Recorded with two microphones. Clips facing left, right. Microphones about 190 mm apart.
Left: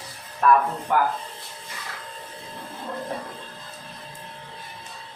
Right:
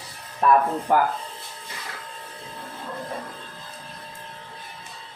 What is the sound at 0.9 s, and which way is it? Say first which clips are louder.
Speech: right 2 dB; 35° right (ahead or behind).